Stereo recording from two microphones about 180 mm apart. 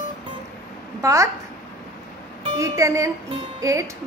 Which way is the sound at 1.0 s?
15° right (ahead or behind).